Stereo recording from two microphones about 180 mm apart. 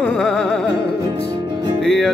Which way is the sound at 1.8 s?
5° left (ahead or behind).